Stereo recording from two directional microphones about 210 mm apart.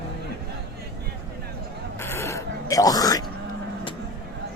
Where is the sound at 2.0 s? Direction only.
10° left (ahead or behind).